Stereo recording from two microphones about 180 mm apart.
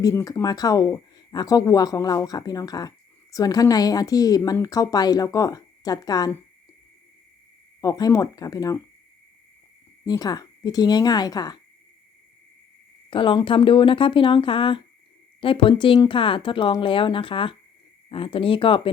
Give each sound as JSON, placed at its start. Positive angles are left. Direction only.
{"t": 0.0, "sound": "speech", "side_deg": 15}
{"t": 7.8, "sound": "speech", "side_deg": 20}
{"t": 10.1, "sound": "speech", "side_deg": 20}
{"t": 13.1, "sound": "speech", "side_deg": 30}